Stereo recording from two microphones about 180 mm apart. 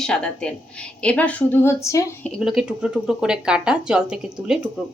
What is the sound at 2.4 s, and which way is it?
A woman's voice, 5° right (ahead or behind).